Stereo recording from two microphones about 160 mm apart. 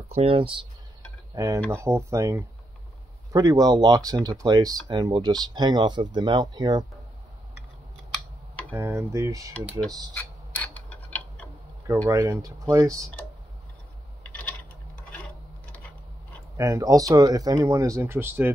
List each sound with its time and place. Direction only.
0.1 s speech: 35° right (ahead or behind)
1.3 s cutlery: 20° right (ahead or behind)
1.7 s speech: 15° right (ahead or behind)
8.7 s speech: 15° right (ahead or behind)
10.1 s tick-tock: 10° left (ahead or behind)
12.1 s speech: 20° right (ahead or behind)
16.5 s speech: 20° right (ahead or behind)